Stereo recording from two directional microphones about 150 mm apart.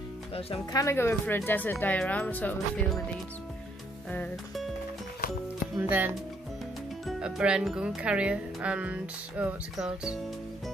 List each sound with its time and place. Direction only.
0.3 s speech: 40° left (ahead or behind)
0.7 s speech: 20° left (ahead or behind)
4.1 s speech: 10° left (ahead or behind)
5.8 s speech: 10° right (ahead or behind)